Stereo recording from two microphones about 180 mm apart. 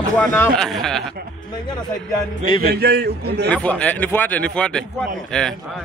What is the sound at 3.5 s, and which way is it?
Speech, 5° left (ahead or behind).